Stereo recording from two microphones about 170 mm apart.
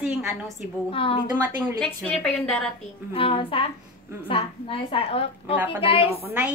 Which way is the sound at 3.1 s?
30° left (ahead or behind).